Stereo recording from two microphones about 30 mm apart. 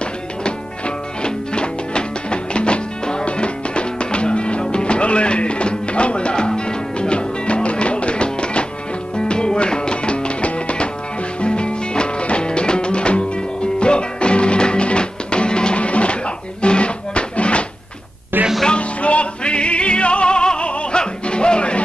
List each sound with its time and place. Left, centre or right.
0.4 s music: left
15.8 s music: left
18.8 s music: left